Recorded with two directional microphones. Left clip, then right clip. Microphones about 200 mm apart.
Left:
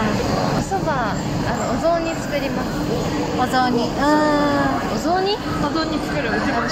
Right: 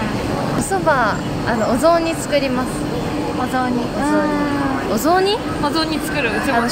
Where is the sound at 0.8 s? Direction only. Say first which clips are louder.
Right 9 dB; 60° right (ahead or behind).